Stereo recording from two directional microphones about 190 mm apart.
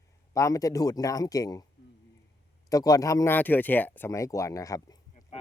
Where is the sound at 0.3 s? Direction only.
15° left (ahead or behind).